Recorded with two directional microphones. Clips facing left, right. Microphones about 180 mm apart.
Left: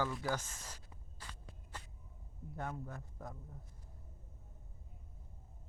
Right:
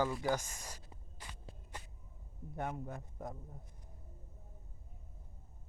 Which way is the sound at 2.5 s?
20° right (ahead or behind).